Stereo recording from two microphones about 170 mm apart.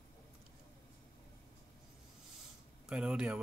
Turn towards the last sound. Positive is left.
turn(degrees=-5)  # may be behind; listen again after turning